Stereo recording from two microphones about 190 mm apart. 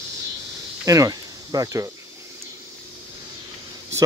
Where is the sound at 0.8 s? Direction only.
15° right (ahead or behind).